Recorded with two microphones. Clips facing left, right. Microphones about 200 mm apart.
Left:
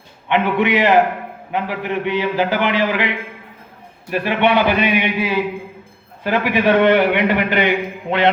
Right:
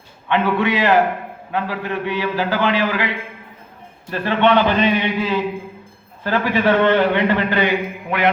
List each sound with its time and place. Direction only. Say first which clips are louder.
0.3 s a man's voice: left 1 dB; 20° left (ahead or behind)